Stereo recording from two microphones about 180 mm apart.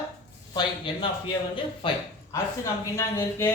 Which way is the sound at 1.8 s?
30° left (ahead or behind).